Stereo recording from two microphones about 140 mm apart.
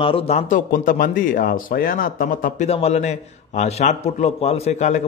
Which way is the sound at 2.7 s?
50° left (ahead or behind).